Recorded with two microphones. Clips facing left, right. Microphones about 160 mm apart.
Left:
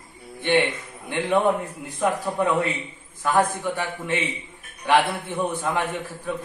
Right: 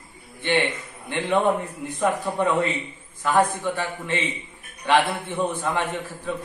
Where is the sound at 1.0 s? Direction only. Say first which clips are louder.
Left 1 dB; 10° left (ahead or behind).